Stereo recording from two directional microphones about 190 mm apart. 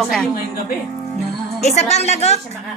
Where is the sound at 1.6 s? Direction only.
35° left (ahead or behind).